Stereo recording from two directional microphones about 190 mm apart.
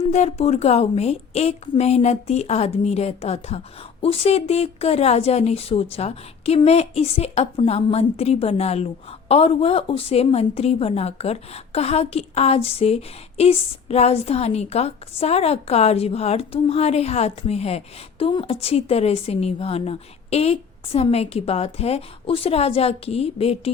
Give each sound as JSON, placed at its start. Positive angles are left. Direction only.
{"t": 0.0, "sound": "a woman's voice", "side_deg": 35}